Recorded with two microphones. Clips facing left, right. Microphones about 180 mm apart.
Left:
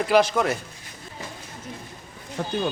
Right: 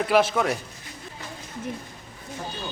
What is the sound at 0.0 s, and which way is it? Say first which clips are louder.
Speech: left 1 dB; centre (ahead or behind).